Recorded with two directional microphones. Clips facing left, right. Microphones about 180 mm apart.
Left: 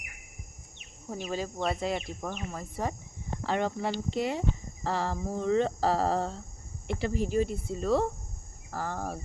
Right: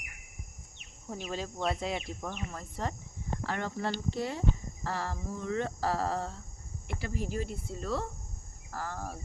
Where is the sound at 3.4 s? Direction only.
20° left (ahead or behind).